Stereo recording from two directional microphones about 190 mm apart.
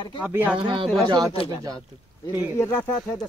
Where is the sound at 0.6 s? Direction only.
25° right (ahead or behind).